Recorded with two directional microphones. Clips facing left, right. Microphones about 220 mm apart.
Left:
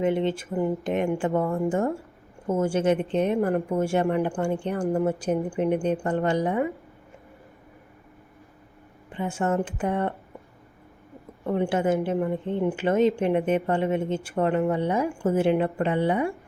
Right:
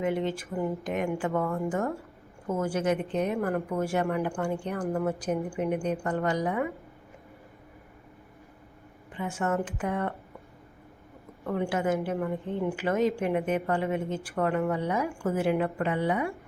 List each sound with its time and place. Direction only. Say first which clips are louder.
0.0 s a woman's voice: left 4 dB; 25° left (ahead or behind)
0.5 s speech: left 5 dB; 15° left (ahead or behind)
0.9 s a woman's voice: left 4 dB; 25° left (ahead or behind)
9.1 s a woman's voice: left 4 dB; 30° left (ahead or behind)
11.4 s a woman's voice: left 4 dB; 25° left (ahead or behind)